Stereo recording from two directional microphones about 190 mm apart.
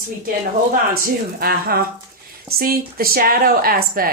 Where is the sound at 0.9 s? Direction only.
50° right (ahead or behind).